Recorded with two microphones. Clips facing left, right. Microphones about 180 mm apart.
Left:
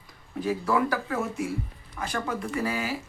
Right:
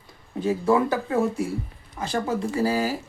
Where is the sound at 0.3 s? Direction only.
25° right (ahead or behind).